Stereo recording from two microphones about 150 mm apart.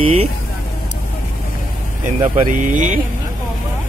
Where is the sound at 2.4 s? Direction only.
60° right (ahead or behind).